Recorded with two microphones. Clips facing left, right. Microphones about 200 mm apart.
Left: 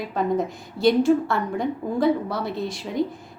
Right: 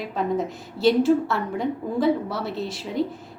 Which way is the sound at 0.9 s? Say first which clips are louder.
Even; 5° right (ahead or behind).